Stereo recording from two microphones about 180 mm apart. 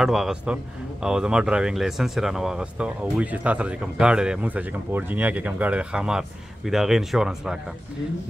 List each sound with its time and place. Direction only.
0.0 s speech: centre (ahead or behind)